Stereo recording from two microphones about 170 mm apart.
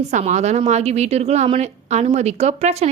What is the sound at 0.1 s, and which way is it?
A woman's voice, 45° right (ahead or behind).